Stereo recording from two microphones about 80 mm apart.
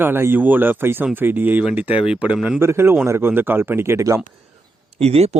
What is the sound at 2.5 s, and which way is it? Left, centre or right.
Speech, right.